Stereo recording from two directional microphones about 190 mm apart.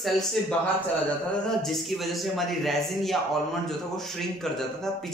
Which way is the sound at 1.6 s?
Centre (ahead or behind).